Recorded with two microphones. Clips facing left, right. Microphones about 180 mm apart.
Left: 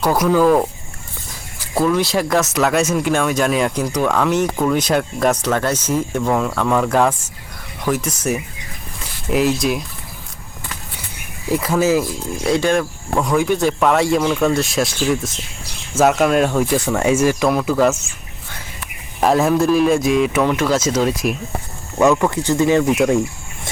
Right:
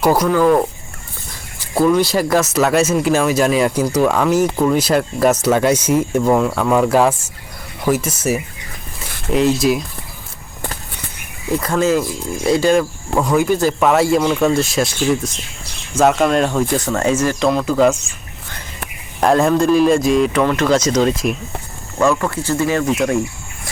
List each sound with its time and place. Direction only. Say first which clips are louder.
1.7 s speech: right 3 dB; centre (ahead or behind)
11.5 s speech: even; 5° left (ahead or behind)
12.4 s speech: right 3 dB; centre (ahead or behind)
19.2 s speech: right 1 dB; 5° left (ahead or behind)
21.9 s speech: left 2 dB; 15° left (ahead or behind)